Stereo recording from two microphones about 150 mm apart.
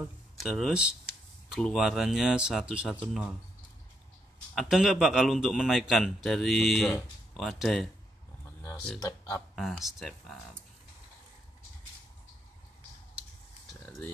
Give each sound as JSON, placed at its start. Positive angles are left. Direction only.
{"t": 0.4, "sound": "speech", "side_deg": 0}
{"t": 4.6, "sound": "speech", "side_deg": 0}
{"t": 13.8, "sound": "a sound", "side_deg": 10}